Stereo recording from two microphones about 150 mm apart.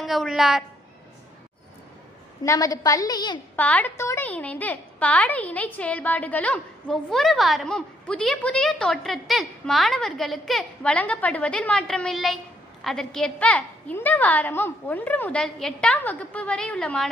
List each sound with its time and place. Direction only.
0.0 s a woman's voice: centre (ahead or behind)
2.4 s a woman's voice: 25° left (ahead or behind)
3.5 s a woman's voice: 10° left (ahead or behind)